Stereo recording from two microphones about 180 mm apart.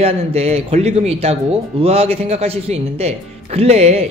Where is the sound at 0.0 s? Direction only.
35° right (ahead or behind).